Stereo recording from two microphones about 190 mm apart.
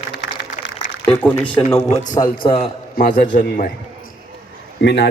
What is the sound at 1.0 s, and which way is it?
Speech, 10° left (ahead or behind).